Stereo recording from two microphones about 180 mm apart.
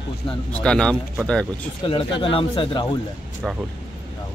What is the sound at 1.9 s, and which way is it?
A man's voice, 30° left (ahead or behind).